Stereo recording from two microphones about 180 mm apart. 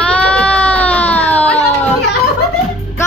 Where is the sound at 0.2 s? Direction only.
5° left (ahead or behind).